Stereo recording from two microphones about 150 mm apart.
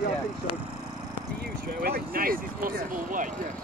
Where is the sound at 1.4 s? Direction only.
90° right; by 3.3 s 65° right (ahead or behind).